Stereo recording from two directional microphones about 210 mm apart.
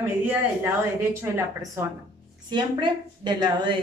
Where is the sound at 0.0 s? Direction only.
10° right (ahead or behind).